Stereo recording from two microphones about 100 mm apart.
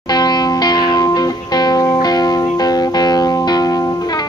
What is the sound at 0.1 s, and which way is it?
Music, 45° left (ahead or behind).